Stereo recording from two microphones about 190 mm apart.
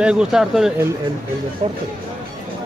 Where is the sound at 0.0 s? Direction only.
5° right (ahead or behind).